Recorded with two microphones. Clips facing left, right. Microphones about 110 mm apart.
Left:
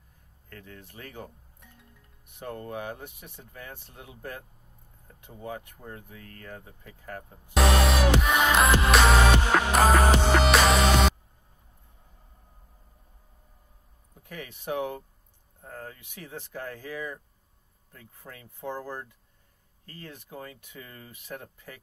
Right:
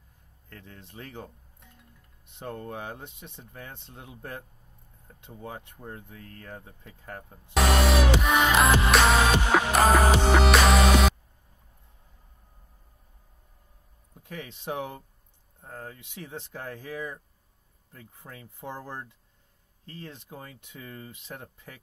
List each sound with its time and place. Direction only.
0.5 s speech: 20° right (ahead or behind)
5.7 s speech: 20° right (ahead or behind)
7.5 s music: centre (ahead or behind)
14.2 s speech: 20° right (ahead or behind)